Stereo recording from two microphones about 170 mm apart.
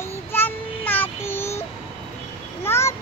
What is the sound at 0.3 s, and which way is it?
Child singing, 10° left (ahead or behind).